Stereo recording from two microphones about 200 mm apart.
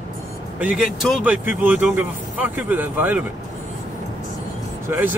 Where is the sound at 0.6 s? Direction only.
5° right (ahead or behind).